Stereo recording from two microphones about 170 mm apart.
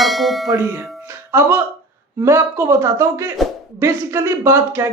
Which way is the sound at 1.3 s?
10° right (ahead or behind).